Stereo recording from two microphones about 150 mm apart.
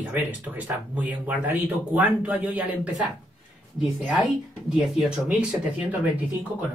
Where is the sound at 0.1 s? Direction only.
10° right (ahead or behind).